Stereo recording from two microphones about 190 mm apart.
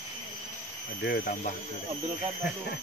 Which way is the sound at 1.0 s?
55° left (ahead or behind).